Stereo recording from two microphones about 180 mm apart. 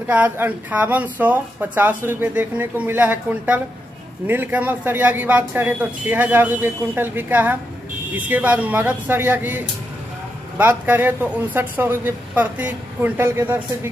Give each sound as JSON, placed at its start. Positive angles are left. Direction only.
{"t": 0.0, "sound": "speech", "side_deg": -10}
{"t": 10.6, "sound": "speech", "side_deg": -10}